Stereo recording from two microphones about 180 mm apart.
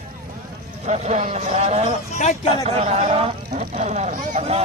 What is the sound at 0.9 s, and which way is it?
A man's voice, 40° right (ahead or behind).